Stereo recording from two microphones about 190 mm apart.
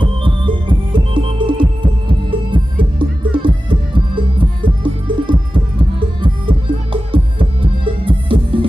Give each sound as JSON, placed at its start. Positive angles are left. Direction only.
{"t": 0.0, "sound": "music", "side_deg": -25}